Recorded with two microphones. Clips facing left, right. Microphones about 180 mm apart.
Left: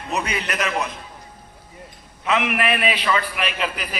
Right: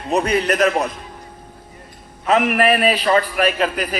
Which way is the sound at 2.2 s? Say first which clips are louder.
Right 6 dB; 40° right (ahead or behind).